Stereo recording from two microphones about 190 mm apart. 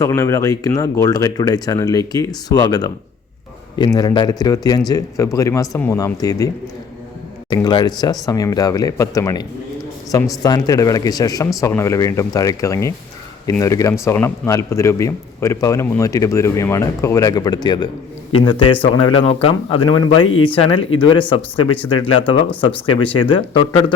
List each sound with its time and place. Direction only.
0.0 s a man's voice: 15° left (ahead or behind)
7.5 s a man's voice: 20° left (ahead or behind)